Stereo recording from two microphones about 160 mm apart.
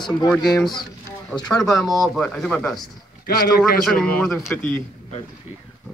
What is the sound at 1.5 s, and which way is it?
Speech, centre (ahead or behind).